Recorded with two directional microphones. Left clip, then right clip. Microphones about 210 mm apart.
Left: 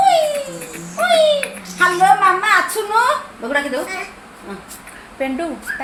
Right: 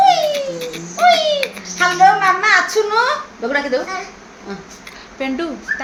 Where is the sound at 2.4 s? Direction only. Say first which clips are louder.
Right 2 dB; 40° right (ahead or behind).